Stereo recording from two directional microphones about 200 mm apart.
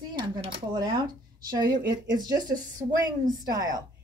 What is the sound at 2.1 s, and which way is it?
Speech, 20° right (ahead or behind).